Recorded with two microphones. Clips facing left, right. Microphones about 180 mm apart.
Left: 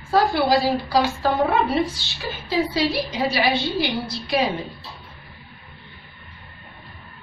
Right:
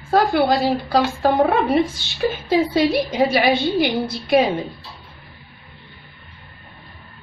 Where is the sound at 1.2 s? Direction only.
45° right (ahead or behind).